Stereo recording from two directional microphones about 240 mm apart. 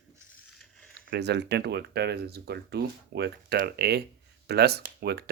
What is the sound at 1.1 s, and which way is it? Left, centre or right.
Speech, right.